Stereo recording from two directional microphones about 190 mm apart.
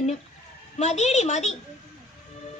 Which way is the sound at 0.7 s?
35° left (ahead or behind).